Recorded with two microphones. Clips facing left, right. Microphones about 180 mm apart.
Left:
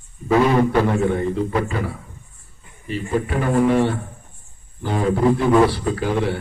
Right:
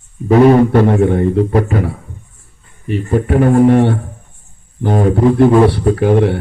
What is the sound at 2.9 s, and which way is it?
A man's voice, 60° right (ahead or behind).